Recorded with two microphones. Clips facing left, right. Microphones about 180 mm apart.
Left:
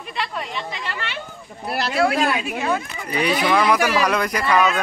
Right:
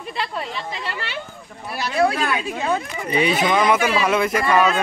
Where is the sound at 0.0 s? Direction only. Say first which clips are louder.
Right 1 dB; 35° right (ahead or behind).